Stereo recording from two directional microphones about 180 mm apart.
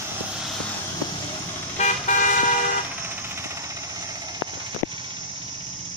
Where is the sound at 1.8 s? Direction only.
45° left (ahead or behind).